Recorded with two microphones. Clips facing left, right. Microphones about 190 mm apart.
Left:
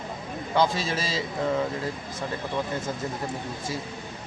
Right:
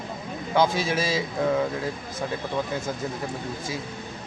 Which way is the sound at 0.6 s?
15° right (ahead or behind).